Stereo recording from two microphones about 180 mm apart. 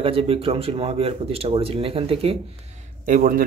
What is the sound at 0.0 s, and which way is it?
Speech, 30° right (ahead or behind).